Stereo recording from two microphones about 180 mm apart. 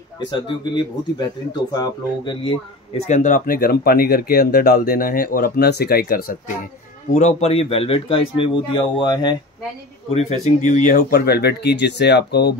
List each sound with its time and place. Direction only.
0.3 s a man's voice: 25° left (ahead or behind); by 6.5 s 55° left (ahead or behind)
7.2 s a man's voice: 40° left (ahead or behind)
10.1 s speech: 40° left (ahead or behind); by 12.5 s 65° left (ahead or behind)